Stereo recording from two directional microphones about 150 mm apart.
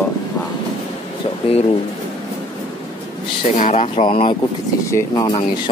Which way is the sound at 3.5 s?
50° left (ahead or behind).